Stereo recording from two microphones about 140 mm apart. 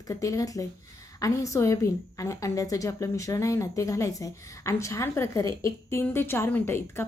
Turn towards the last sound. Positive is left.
turn(degrees=15)  # may be behind; listen again after turning